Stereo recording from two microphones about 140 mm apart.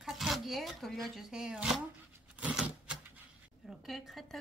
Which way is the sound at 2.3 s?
5° right (ahead or behind).